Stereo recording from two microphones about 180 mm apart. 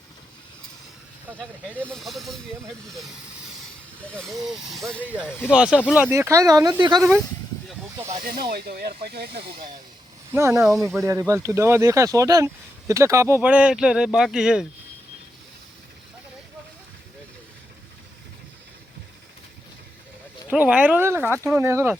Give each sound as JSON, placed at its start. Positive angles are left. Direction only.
{"t": 1.7, "sound": "speech", "side_deg": 5}
{"t": 8.2, "sound": "speech", "side_deg": -55}
{"t": 10.3, "sound": "speech", "side_deg": -15}
{"t": 20.5, "sound": "speech", "side_deg": -5}